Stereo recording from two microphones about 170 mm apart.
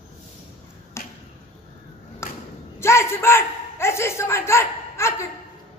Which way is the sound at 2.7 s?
15° left (ahead or behind).